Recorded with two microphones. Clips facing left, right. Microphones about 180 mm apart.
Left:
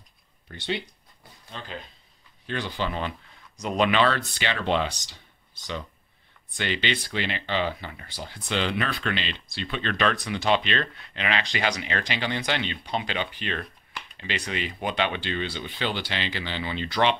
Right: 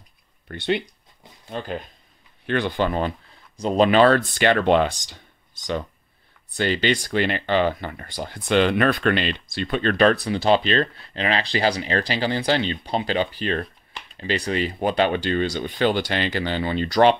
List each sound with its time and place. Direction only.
0.5 s speech: 55° right (ahead or behind)
3.5 s speech: 35° right (ahead or behind)